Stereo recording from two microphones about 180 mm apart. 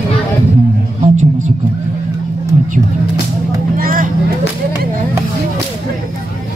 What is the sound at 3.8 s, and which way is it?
Vehicle, 50° right (ahead or behind).